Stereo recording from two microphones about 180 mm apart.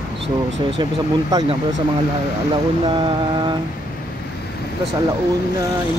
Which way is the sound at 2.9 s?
25° right (ahead or behind).